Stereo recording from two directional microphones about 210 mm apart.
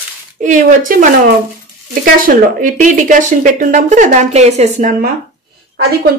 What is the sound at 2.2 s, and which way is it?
Speech, 40° right (ahead or behind).